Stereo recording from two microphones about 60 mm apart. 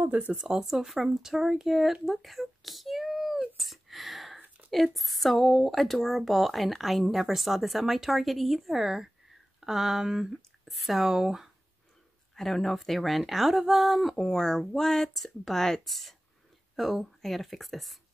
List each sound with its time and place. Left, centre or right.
0.0 s speech: right
0.4 s speech: centre
3.5 s a sound: centre
4.6 s a sound: centre
4.9 s speech: centre
12.4 s speech: centre